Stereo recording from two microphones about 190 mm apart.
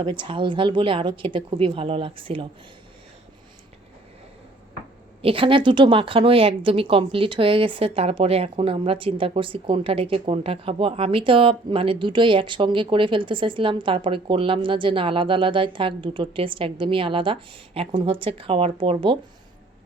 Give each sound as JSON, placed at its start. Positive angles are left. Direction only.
{"t": 0.0, "sound": "speech", "side_deg": -25}
{"t": 5.2, "sound": "speech", "side_deg": -30}